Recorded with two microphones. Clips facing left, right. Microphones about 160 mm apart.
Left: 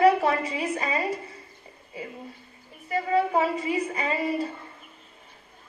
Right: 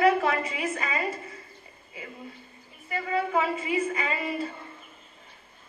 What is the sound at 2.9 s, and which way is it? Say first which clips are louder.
A woman's voice: left 4 dB; 40° left (ahead or behind).